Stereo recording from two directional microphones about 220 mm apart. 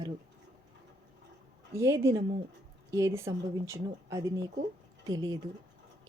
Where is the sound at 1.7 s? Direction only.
15° right (ahead or behind).